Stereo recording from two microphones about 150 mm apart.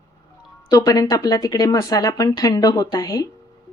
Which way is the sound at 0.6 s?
25° left (ahead or behind).